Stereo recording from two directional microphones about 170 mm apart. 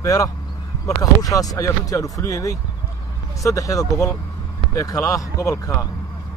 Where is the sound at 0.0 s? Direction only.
20° left (ahead or behind).